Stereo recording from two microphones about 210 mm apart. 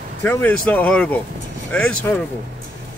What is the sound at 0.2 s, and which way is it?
A man's voice, 10° left (ahead or behind).